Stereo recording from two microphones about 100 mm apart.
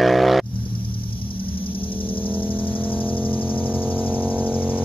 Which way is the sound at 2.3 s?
20° left (ahead or behind).